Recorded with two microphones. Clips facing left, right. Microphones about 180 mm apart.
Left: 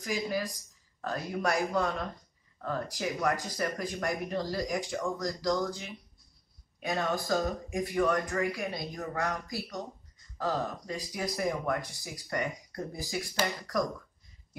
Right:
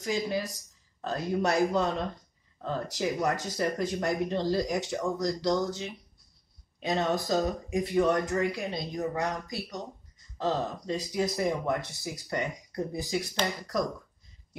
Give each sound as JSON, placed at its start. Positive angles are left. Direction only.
{"t": 0.0, "sound": "speech", "side_deg": -25}